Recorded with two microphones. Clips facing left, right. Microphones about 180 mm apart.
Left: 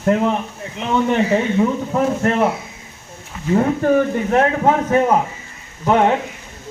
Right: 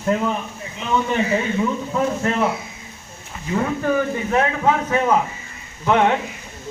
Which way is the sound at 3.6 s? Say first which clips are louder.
Left 5 dB; 45° left (ahead or behind).